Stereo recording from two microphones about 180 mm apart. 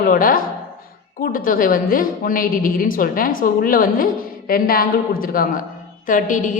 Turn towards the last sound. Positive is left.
turn(degrees=45)  # may be behind; listen again after turning